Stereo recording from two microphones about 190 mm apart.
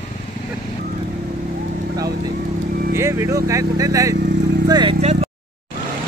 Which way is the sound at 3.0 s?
15° right (ahead or behind).